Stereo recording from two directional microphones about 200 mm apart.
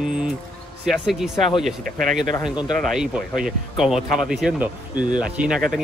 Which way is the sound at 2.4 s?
Centre (ahead or behind).